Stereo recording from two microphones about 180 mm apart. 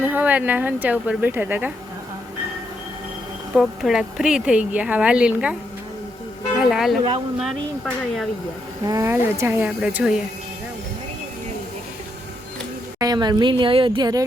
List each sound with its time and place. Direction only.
0.0 s speech: 10° right (ahead or behind)
3.5 s speech: centre (ahead or behind)
6.7 s speech: centre (ahead or behind)
8.9 s speech: 15° right (ahead or behind)
13.0 s speech: 20° right (ahead or behind)